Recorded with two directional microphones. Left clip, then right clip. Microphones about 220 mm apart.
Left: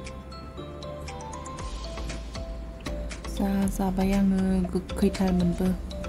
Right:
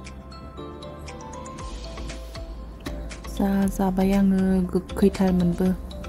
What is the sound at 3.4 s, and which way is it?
Speech, 20° right (ahead or behind).